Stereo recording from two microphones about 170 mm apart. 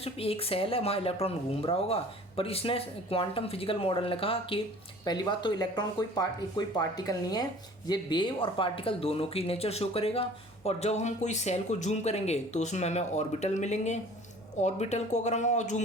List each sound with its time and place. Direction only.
0.0 s speech: 35° left (ahead or behind)